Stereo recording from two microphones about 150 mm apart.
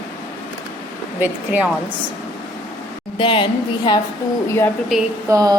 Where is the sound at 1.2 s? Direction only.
10° right (ahead or behind).